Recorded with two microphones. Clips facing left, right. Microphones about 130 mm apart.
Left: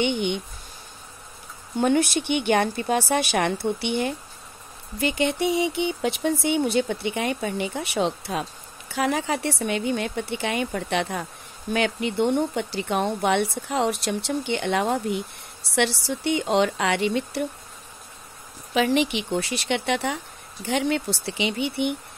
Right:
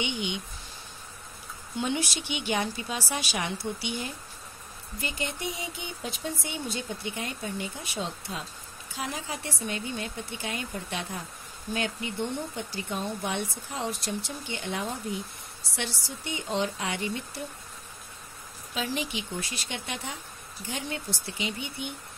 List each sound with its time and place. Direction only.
0.0 s speech: 55° left (ahead or behind)
1.8 s speech: 55° left (ahead or behind)
5.0 s speech: 75° left (ahead or behind)
18.7 s speech: 75° left (ahead or behind)